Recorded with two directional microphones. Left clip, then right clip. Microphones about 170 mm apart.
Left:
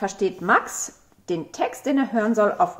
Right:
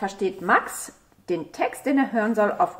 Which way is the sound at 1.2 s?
10° left (ahead or behind).